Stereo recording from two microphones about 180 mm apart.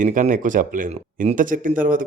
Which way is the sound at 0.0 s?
45° right (ahead or behind).